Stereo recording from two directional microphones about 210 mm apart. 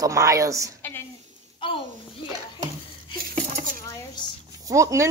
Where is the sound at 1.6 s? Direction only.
25° left (ahead or behind).